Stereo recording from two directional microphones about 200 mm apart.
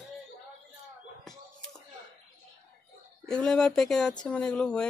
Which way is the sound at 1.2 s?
Centre (ahead or behind).